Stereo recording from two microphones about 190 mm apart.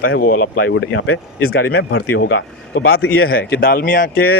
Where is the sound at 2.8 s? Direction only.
90° left.